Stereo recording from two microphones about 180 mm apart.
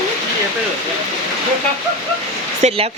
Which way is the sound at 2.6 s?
35° right (ahead or behind).